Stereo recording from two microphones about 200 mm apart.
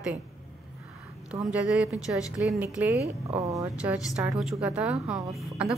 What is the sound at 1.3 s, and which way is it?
A woman's voice, 5° right (ahead or behind).